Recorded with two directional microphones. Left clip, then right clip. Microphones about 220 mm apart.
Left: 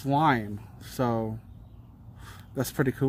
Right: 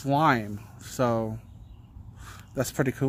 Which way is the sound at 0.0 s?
5° right (ahead or behind).